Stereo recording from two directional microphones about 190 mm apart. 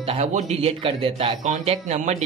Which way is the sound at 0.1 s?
35° right (ahead or behind).